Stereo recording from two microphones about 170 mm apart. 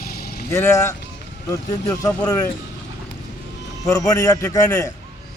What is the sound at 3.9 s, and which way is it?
A man's voice, 20° left (ahead or behind).